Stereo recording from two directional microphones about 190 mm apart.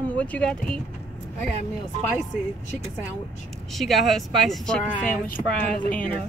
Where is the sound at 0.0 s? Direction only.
10° left (ahead or behind).